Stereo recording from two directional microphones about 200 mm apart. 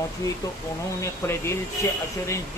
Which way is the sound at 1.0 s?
15° left (ahead or behind).